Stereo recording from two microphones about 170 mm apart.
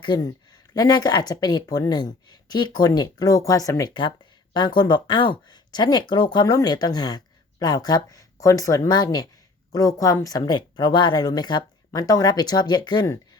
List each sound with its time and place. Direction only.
0.0 s speech: 25° left (ahead or behind)